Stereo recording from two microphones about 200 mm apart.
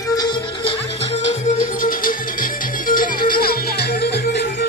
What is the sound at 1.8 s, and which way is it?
Music, 45° left (ahead or behind).